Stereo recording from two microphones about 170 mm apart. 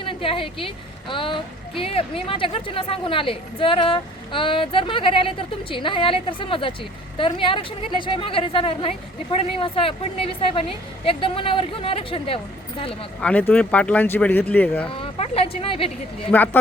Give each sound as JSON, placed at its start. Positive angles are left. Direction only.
{"t": 0.0, "sound": "a woman's voice", "side_deg": 30}
{"t": 13.2, "sound": "speech", "side_deg": 10}
{"t": 14.8, "sound": "speech", "side_deg": 30}
{"t": 16.3, "sound": "speech", "side_deg": 10}